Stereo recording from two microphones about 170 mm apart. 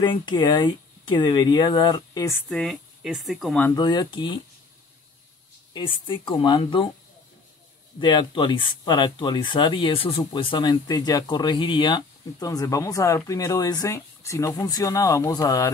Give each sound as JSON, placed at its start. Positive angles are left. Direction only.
{"t": 0.0, "sound": "speech", "side_deg": 30}
{"t": 2.5, "sound": "speech", "side_deg": 0}
{"t": 3.7, "sound": "speech", "side_deg": 25}
{"t": 5.7, "sound": "speech", "side_deg": 30}
{"t": 8.0, "sound": "speech", "side_deg": 30}